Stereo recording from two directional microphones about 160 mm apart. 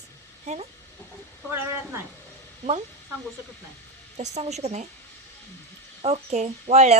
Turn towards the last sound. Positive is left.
turn(degrees=-45)  # may be behind; listen again after turning